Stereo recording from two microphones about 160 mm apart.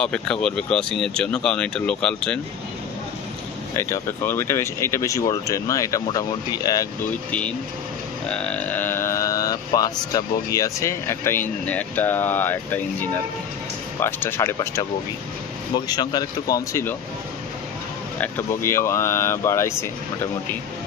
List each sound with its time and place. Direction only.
0.0 s speech: 5° left (ahead or behind)
3.7 s speech: 15° left (ahead or behind)
7.2 s speech: 5° left (ahead or behind)
15.9 s speech: 25° left (ahead or behind)
18.2 s speech: 15° left (ahead or behind)